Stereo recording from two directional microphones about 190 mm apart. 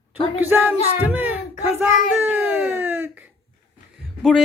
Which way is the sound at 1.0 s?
10° right (ahead or behind).